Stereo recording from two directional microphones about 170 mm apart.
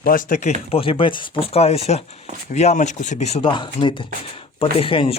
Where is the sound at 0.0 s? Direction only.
55° left (ahead or behind).